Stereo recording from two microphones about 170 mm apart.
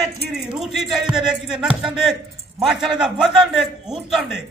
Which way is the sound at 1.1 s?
5° right (ahead or behind).